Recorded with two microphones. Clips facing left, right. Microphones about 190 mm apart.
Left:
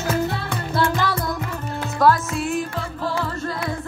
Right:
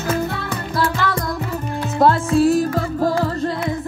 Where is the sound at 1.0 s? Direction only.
15° left (ahead or behind).